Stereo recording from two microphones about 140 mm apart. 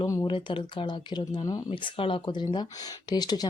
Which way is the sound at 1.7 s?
40° left (ahead or behind).